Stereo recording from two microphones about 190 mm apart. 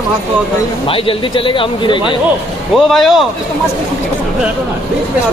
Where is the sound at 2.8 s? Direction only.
Centre (ahead or behind).